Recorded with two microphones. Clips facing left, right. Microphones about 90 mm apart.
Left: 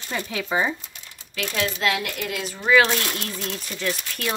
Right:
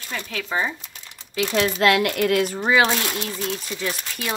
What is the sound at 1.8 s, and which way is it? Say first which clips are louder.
Speech: right 7 dB; 70° right (ahead or behind).